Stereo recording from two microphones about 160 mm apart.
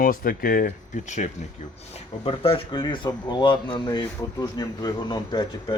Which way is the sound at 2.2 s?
35° left (ahead or behind).